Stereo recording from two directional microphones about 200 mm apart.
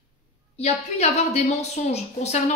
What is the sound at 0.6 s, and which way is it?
A woman's voice, 30° left (ahead or behind).